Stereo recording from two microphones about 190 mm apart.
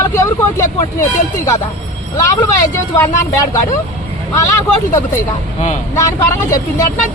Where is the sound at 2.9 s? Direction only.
15° left (ahead or behind).